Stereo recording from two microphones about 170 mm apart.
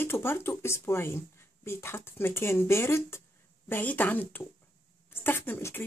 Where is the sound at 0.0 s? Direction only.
15° left (ahead or behind).